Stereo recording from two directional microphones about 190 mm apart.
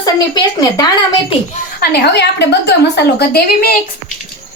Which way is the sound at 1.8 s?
60° left (ahead or behind).